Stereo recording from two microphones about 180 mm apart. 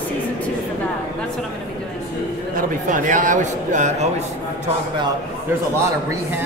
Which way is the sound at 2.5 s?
45° right (ahead or behind).